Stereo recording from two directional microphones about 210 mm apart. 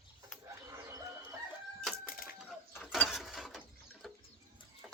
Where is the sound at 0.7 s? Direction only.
15° right (ahead or behind).